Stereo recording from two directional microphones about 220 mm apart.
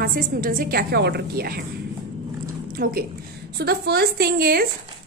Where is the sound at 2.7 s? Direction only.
40° right (ahead or behind).